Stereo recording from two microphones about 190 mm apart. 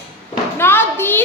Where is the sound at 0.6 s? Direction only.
10° left (ahead or behind).